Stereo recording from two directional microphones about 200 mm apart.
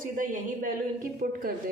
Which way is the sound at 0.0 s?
45° right (ahead or behind).